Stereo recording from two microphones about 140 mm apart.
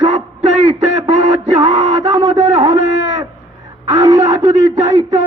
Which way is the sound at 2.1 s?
25° right (ahead or behind).